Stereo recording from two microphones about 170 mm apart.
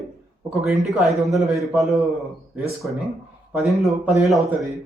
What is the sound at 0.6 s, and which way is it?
A man's voice, centre (ahead or behind).